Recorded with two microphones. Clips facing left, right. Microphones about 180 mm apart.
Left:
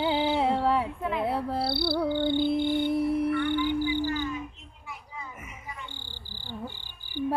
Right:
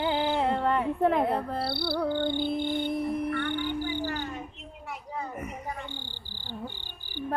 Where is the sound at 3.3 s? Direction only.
55° right (ahead or behind).